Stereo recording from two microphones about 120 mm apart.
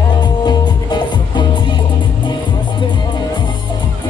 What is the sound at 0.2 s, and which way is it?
Music, 35° left (ahead or behind).